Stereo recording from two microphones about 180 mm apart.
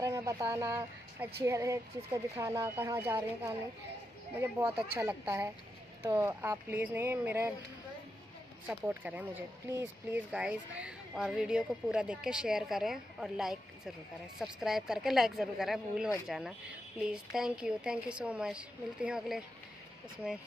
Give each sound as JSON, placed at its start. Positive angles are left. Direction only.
{"t": 0.0, "sound": "speech", "side_deg": -20}
{"t": 8.6, "sound": "speech", "side_deg": -10}